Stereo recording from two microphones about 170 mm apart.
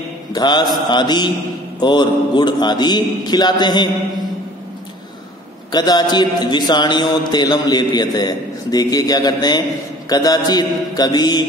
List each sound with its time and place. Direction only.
0.3 s mantra: 25° left (ahead or behind)
0.8 s a man's voice: 25° left (ahead or behind)
5.7 s a man's voice: 25° left (ahead or behind)